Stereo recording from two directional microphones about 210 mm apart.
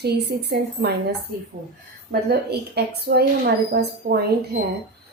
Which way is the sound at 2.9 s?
50° right (ahead or behind).